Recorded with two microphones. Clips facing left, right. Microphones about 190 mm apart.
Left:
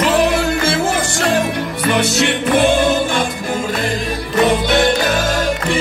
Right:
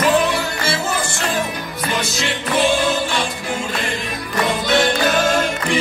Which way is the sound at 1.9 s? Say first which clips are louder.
Left 7 dB; 65° left (ahead or behind).